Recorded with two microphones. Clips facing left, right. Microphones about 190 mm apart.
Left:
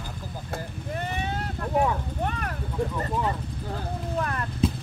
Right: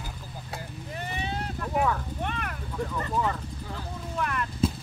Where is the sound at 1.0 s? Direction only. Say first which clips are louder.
Right 1 dB; 50° left (ahead or behind).